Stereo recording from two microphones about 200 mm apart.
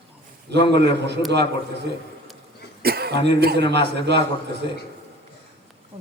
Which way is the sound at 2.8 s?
50° right (ahead or behind).